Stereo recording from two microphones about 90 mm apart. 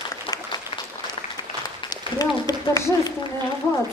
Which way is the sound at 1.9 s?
45° left (ahead or behind).